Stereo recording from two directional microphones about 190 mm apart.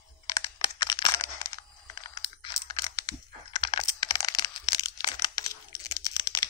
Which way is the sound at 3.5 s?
25° left (ahead or behind).